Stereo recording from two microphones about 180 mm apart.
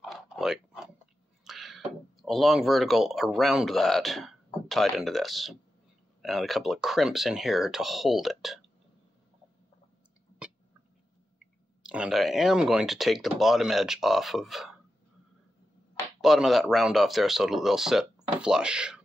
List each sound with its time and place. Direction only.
0.0 s a sound: centre (ahead or behind)
2.2 s speech: centre (ahead or behind)
11.8 s speech: 5° right (ahead or behind)
16.2 s speech: centre (ahead or behind)